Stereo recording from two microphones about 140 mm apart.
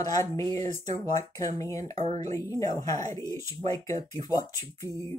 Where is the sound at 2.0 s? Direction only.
50° right (ahead or behind).